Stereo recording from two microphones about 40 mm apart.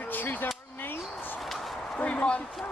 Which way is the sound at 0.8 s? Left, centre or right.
Left.